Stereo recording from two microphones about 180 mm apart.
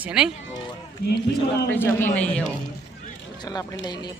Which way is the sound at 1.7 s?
10° left (ahead or behind).